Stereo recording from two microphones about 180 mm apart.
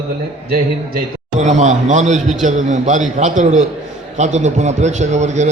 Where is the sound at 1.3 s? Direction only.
40° right (ahead or behind).